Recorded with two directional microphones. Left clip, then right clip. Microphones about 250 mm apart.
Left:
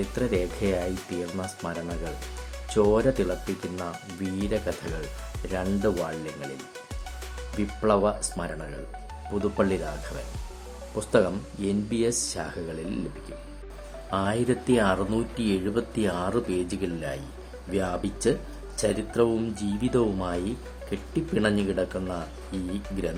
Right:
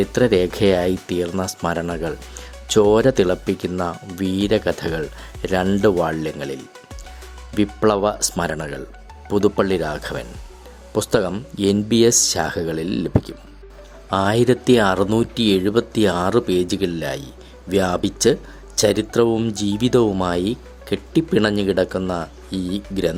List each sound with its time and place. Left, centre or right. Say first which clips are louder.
0.1 s speech: right 11 dB; right
7.6 s speech: right 6 dB; right
14.1 s speech: right 9 dB; right